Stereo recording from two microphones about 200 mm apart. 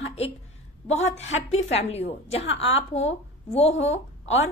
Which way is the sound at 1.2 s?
30° left (ahead or behind).